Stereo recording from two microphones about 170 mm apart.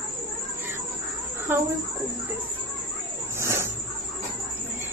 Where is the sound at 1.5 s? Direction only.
10° right (ahead or behind).